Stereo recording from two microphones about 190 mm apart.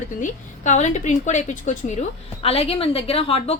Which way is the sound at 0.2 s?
40° left (ahead or behind).